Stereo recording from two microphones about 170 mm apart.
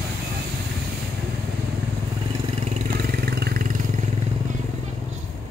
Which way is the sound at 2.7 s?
55° right (ahead or behind).